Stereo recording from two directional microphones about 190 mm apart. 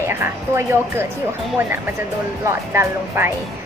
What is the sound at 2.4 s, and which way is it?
Speech, 15° right (ahead or behind).